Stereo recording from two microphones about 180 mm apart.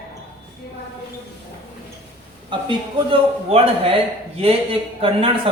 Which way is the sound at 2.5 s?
30° right (ahead or behind).